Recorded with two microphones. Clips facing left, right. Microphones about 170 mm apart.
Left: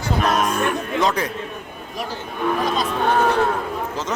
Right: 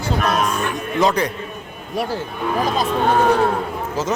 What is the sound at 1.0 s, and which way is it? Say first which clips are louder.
Speech: right 4 dB; 5° left (ahead or behind).